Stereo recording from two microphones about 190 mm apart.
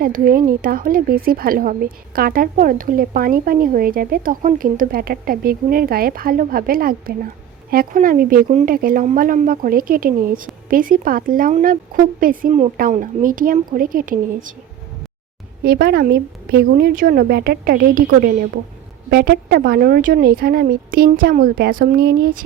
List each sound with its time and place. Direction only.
0.0 s speech: 45° right (ahead or behind)
15.6 s a woman's voice: 55° right (ahead or behind)